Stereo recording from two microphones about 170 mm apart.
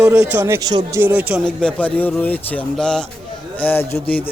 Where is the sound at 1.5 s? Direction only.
5° left (ahead or behind).